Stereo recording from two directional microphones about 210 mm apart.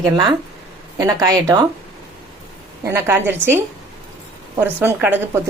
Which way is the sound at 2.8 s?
10° right (ahead or behind).